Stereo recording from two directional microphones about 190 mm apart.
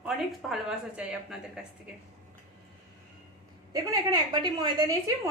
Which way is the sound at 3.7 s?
20° right (ahead or behind).